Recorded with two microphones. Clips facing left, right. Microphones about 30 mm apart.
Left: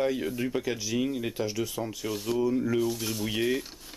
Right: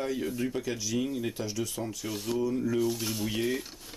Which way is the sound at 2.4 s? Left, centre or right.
Centre.